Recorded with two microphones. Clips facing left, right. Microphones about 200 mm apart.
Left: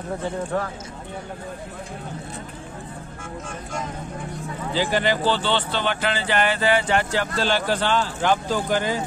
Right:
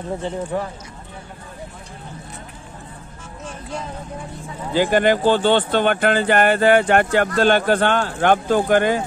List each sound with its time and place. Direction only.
0.5 s speech: 15° right (ahead or behind)
4.7 s speech: 50° right (ahead or behind)